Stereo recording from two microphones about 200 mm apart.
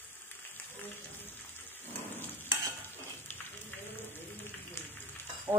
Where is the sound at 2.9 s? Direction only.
10° left (ahead or behind).